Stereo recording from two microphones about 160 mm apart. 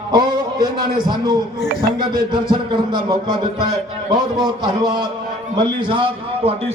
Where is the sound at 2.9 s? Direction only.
25° right (ahead or behind).